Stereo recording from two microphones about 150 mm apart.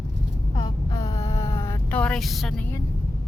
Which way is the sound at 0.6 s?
25° left (ahead or behind).